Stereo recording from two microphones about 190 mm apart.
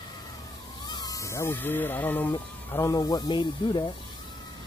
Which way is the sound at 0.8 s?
20° left (ahead or behind).